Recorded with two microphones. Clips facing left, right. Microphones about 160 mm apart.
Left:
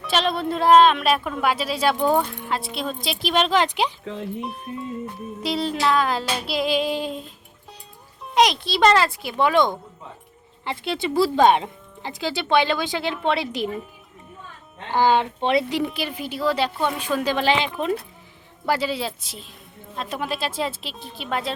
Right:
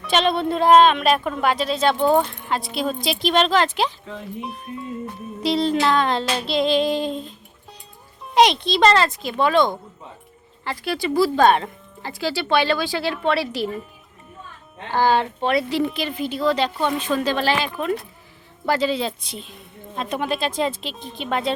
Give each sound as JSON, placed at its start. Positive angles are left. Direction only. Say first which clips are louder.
{"t": 0.0, "sound": "child singing", "louder": "right 3 dB", "side_deg": 0}
{"t": 4.4, "sound": "child singing", "louder": "left 1 dB", "side_deg": 0}
{"t": 8.2, "sound": "a woman's voice", "louder": "right 3 dB", "side_deg": 0}
{"t": 14.8, "sound": "a woman's voice", "louder": "even", "side_deg": 15}
{"t": 15.8, "sound": "a woman's voice", "louder": "right 3 dB", "side_deg": 10}
{"t": 20.0, "sound": "child singing", "louder": "right 3 dB", "side_deg": 0}